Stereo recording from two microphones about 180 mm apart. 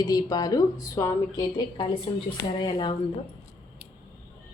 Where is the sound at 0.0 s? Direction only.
20° left (ahead or behind).